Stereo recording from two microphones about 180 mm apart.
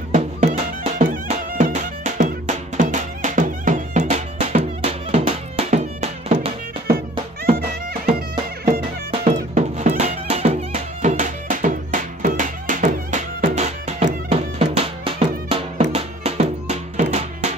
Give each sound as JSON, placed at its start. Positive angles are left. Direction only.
{"t": 0.1, "sound": "music", "side_deg": -45}
{"t": 9.1, "sound": "music", "side_deg": -40}